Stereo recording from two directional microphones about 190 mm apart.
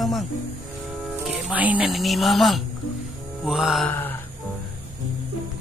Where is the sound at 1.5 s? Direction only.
5° right (ahead or behind).